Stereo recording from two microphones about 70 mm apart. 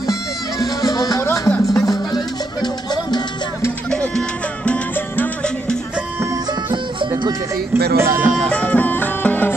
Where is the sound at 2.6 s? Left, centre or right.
Left.